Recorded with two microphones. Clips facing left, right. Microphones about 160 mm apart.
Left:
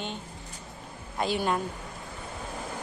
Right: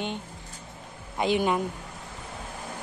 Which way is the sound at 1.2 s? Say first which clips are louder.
Right 3 dB; 15° right (ahead or behind).